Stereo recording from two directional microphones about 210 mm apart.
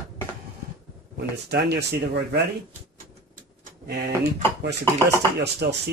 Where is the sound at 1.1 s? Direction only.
50° right (ahead or behind).